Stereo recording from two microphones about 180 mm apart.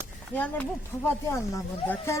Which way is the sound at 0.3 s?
10° left (ahead or behind).